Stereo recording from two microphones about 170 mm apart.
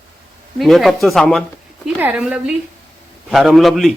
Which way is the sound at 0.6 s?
Centre (ahead or behind).